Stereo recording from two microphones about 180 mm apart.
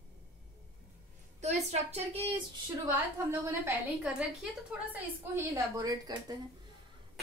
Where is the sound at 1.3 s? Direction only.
40° right (ahead or behind).